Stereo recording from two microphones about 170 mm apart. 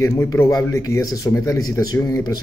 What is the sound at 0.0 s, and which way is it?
Speech, 15° left (ahead or behind).